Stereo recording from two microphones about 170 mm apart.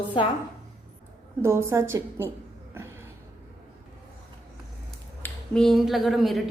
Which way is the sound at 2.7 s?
15° right (ahead or behind).